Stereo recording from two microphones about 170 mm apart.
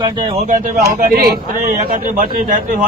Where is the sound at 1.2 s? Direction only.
55° right (ahead or behind).